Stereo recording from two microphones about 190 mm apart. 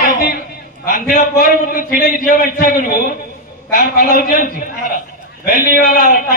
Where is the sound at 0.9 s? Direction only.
45° left (ahead or behind).